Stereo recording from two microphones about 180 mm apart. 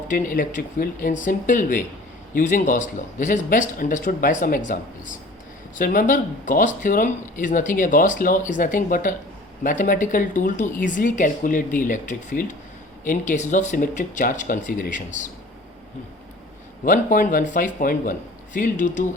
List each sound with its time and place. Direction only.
0.1 s speech: 45° left (ahead or behind)
16.8 s speech: 45° left (ahead or behind)